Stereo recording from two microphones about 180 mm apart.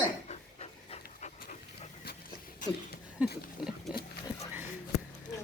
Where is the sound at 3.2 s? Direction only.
5° right (ahead or behind).